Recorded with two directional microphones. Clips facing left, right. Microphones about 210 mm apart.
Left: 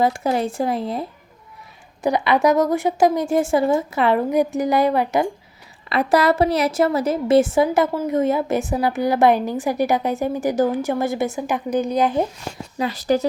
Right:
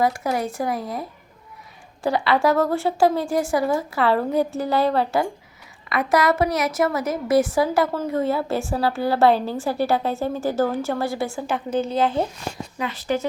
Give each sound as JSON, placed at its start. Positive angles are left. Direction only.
{"t": 0.0, "sound": "a woman's voice", "side_deg": 25}
{"t": 2.0, "sound": "a woman's voice", "side_deg": 20}
{"t": 5.9, "sound": "a woman's voice", "side_deg": 30}
{"t": 12.8, "sound": "speech", "side_deg": 40}